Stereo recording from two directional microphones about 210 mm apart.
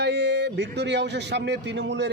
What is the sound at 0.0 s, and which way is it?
A man's voice, 55° right (ahead or behind).